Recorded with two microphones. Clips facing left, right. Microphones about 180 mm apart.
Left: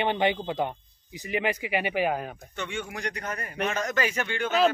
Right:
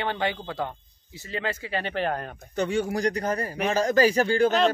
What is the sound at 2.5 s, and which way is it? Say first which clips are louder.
A man's voice: right 10 dB; 40° right (ahead or behind).